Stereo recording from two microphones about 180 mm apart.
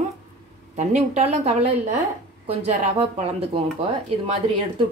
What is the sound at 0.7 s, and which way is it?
A woman's voice, 35° right (ahead or behind).